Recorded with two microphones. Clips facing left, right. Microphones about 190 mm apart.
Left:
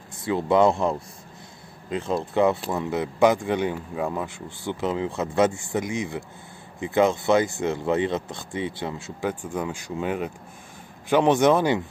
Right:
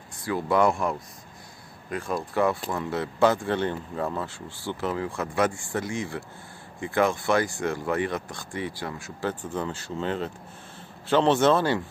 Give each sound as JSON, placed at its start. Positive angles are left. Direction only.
{"t": 0.2, "sound": "speech", "side_deg": 20}
{"t": 9.3, "sound": "speech", "side_deg": 10}